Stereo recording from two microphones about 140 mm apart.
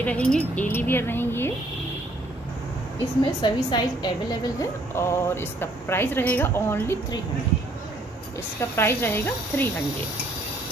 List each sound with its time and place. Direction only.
0.0 s speech: 10° left (ahead or behind)
3.4 s a woman's voice: 35° left (ahead or behind)
4.6 s speech: 20° left (ahead or behind)
8.5 s speech: 15° left (ahead or behind)